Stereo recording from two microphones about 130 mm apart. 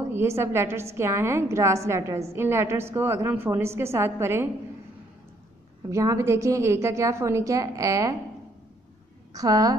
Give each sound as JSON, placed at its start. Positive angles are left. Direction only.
{"t": 0.1, "sound": "a woman's voice", "side_deg": -20}
{"t": 5.9, "sound": "a woman's voice", "side_deg": -25}
{"t": 9.3, "sound": "a woman's voice", "side_deg": -30}